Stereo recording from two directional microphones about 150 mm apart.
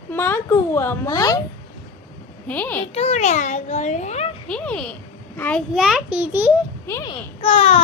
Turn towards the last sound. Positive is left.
turn(degrees=45)  # may be behind; listen again after turning